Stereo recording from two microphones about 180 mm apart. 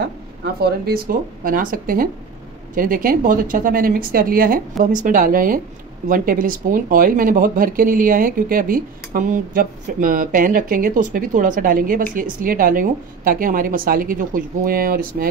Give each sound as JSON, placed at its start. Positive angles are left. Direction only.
{"t": 0.6, "sound": "speech", "side_deg": -60}